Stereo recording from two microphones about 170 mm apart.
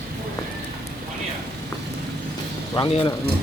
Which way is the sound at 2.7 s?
30° left (ahead or behind).